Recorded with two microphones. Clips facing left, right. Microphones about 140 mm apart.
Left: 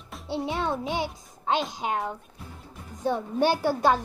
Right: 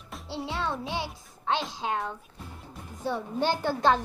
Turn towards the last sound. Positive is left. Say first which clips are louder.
# left 2 dB
turn(degrees=10)  # may be behind; listen again after turning